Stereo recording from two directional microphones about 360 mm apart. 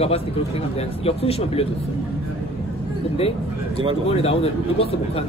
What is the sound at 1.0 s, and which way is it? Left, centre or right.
Speech, centre.